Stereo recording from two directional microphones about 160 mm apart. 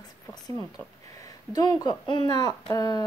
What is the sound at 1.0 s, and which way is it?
Speech, 20° left (ahead or behind).